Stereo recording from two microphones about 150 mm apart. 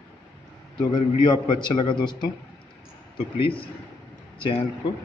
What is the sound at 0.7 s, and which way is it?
A man's voice, 30° left (ahead or behind).